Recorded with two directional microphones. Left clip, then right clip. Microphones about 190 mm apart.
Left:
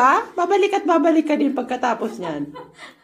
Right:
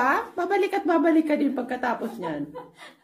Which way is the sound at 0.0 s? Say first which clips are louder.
Left 7 dB; 5° right (ahead or behind).